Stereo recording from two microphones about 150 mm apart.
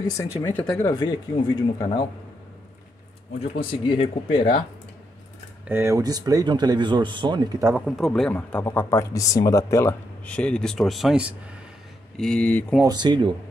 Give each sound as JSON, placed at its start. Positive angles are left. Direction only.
{"t": 0.4, "sound": "speech", "side_deg": 15}
{"t": 0.9, "sound": "speech", "side_deg": 30}
{"t": 3.5, "sound": "speech", "side_deg": 35}
{"t": 5.7, "sound": "speech", "side_deg": -15}
{"t": 7.8, "sound": "speech", "side_deg": 0}
{"t": 10.3, "sound": "speech", "side_deg": 5}
{"t": 12.2, "sound": "speech", "side_deg": 5}
{"t": 12.8, "sound": "speech", "side_deg": -30}